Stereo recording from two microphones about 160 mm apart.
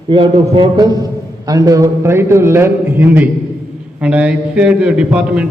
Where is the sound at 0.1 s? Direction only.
30° right (ahead or behind).